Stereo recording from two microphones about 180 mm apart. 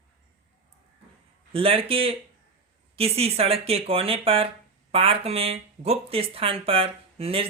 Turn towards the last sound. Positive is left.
turn(degrees=-30)  # may be behind; listen again after turning